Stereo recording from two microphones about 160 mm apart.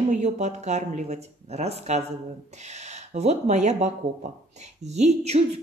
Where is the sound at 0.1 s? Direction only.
45° right (ahead or behind).